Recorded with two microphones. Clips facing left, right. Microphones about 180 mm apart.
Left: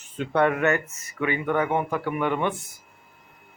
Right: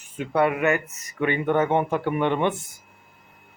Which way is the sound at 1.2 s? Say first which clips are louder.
Right 3 dB; 25° right (ahead or behind).